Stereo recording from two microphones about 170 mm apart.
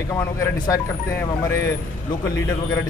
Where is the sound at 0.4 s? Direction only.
15° left (ahead or behind).